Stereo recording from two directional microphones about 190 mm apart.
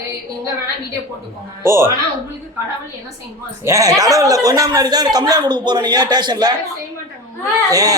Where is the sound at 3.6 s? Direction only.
15° right (ahead or behind).